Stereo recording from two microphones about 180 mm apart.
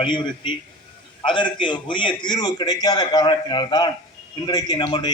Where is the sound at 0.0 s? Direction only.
25° left (ahead or behind).